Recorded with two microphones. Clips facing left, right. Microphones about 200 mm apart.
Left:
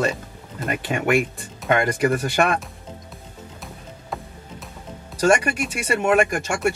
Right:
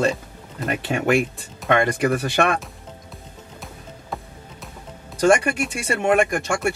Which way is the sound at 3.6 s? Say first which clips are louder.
Even; centre (ahead or behind).